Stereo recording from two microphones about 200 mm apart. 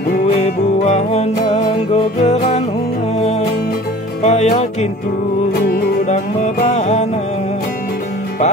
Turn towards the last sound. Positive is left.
turn(degrees=35)  # may be behind; listen again after turning